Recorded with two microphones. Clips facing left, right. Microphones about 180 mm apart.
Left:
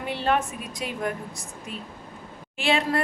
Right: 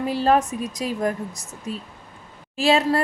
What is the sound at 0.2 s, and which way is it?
Speech, 35° right (ahead or behind).